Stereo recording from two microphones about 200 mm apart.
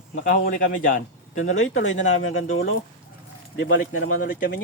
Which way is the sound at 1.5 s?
75° left (ahead or behind).